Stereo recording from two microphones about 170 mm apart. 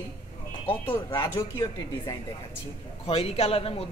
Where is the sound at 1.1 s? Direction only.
25° left (ahead or behind).